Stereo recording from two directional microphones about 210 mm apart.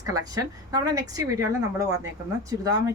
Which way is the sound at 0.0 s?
15° right (ahead or behind).